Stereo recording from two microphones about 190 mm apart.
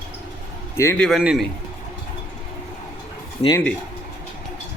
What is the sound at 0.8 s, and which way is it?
Speech, 10° left (ahead or behind).